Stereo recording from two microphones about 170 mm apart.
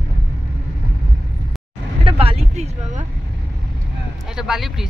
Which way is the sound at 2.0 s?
35° right (ahead or behind).